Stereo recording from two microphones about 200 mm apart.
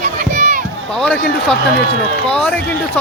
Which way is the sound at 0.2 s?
40° right (ahead or behind).